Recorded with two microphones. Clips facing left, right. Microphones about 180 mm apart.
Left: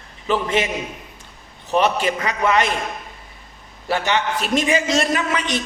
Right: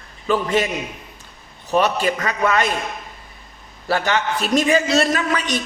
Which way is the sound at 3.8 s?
20° left (ahead or behind).